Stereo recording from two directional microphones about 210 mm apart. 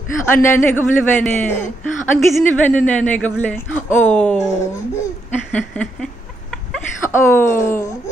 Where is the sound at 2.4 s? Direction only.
5° left (ahead or behind).